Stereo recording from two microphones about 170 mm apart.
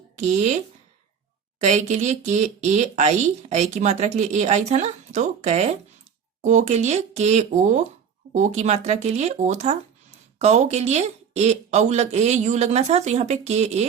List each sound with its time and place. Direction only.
0.2 s a woman's voice: 40° right (ahead or behind)